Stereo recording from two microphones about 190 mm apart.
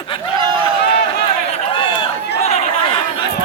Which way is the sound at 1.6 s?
30° left (ahead or behind).